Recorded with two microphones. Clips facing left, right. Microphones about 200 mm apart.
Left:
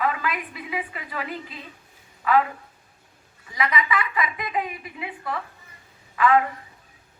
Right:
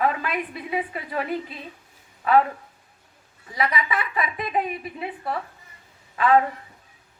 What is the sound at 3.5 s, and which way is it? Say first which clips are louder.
A woman's voice: even; 35° right (ahead or behind).